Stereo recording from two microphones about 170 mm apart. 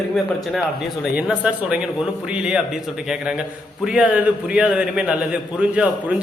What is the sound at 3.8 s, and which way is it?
A man's voice, 5° right (ahead or behind).